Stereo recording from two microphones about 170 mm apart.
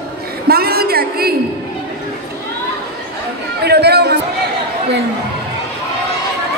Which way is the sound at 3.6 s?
75° right (ahead or behind).